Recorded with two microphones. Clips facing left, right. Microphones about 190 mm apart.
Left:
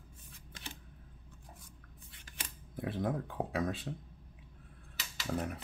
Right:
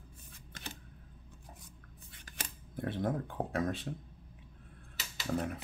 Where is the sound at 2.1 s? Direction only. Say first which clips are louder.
Right 3 dB; 45° right (ahead or behind).